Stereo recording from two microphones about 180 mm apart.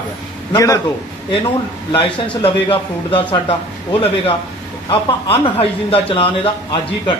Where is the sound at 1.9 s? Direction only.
25° left (ahead or behind).